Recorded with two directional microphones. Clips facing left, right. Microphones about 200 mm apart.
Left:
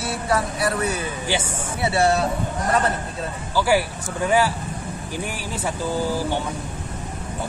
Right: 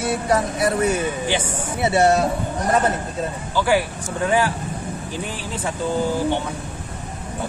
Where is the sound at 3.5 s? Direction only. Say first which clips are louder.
Even; 10° left (ahead or behind).